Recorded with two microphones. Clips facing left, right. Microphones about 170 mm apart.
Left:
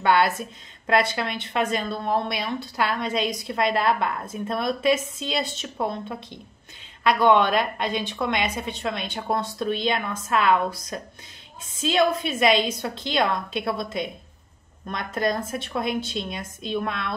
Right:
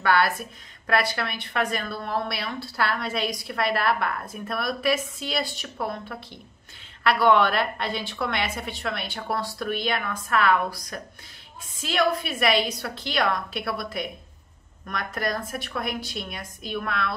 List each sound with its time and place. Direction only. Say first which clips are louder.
0.0 s a woman's voice: left 2 dB; 20° left (ahead or behind)
15.1 s a woman's voice: left 5 dB; 20° left (ahead or behind)